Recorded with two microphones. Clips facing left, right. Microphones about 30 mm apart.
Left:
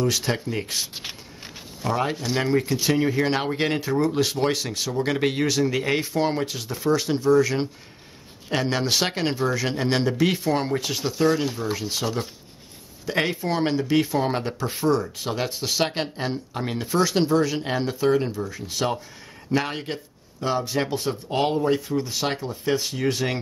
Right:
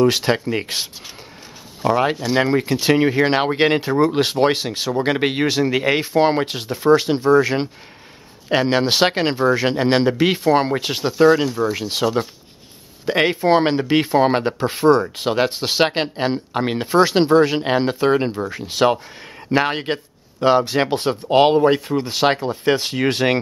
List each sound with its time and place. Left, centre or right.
0.0 s speech: right
13.4 s speech: right